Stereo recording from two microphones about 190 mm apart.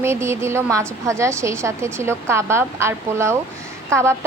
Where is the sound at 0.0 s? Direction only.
15° right (ahead or behind).